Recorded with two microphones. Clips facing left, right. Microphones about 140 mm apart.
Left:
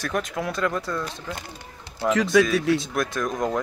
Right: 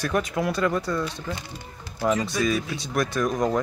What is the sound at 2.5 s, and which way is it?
Speech, 75° left (ahead or behind).